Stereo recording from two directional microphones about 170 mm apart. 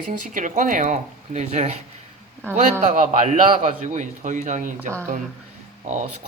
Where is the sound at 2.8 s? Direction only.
45° right (ahead or behind).